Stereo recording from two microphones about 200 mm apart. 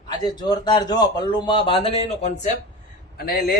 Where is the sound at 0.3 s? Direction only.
20° left (ahead or behind).